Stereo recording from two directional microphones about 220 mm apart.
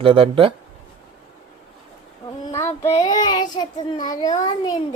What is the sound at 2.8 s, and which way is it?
Child singing, 30° left (ahead or behind).